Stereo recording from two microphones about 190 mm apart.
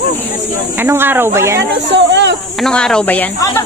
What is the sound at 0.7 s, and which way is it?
Speech, 10° right (ahead or behind).